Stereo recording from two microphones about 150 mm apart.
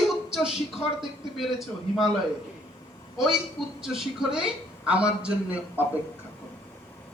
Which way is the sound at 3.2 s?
5° right (ahead or behind).